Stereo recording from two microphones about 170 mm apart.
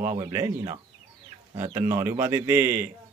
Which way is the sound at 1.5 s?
15° right (ahead or behind).